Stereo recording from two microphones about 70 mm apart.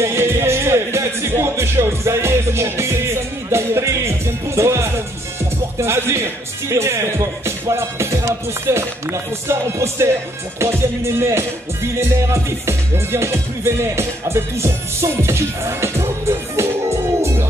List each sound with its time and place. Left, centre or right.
0.0 s speech: right
10.6 s music: right